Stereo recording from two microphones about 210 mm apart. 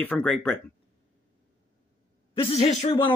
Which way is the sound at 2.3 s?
25° left (ahead or behind).